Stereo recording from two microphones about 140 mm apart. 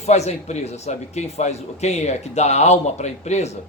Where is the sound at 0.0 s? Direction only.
50° left (ahead or behind).